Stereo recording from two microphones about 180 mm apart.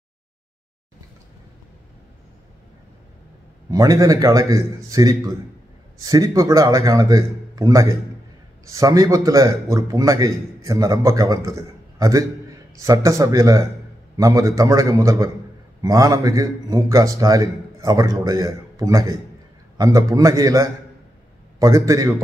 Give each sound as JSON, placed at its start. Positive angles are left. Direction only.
{"t": 3.7, "sound": "a man's voice", "side_deg": -20}